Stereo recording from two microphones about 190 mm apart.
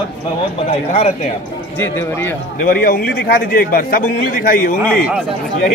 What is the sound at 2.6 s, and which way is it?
A man's voice, 50° left (ahead or behind).